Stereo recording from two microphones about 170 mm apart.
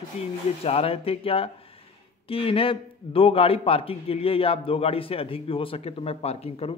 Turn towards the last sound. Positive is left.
turn(degrees=35)  # may be behind; listen again after turning